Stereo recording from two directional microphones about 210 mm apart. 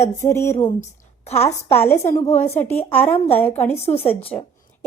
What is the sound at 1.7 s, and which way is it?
A woman's voice, 10° left (ahead or behind).